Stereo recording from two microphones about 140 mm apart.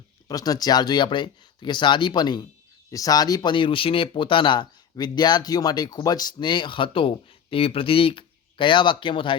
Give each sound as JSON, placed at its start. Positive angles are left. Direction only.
{"t": 0.3, "sound": "speech", "side_deg": 25}